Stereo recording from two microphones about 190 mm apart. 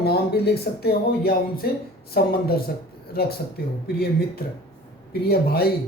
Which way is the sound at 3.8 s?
55° left (ahead or behind).